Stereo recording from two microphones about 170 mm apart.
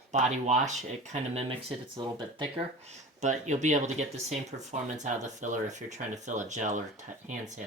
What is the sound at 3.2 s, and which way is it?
Speech, 45° right (ahead or behind).